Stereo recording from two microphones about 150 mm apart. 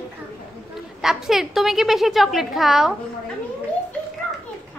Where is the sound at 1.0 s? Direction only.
Centre (ahead or behind).